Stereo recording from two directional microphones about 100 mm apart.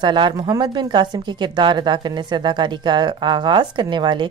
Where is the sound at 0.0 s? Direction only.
50° right (ahead or behind).